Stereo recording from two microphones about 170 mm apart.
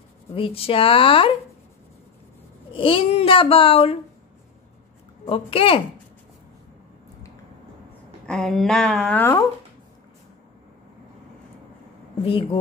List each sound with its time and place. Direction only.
0.3 s speech: 35° left (ahead or behind)
2.7 s speech: 30° left (ahead or behind)
5.2 s speech: 30° left (ahead or behind)
8.3 s speech: 5° left (ahead or behind)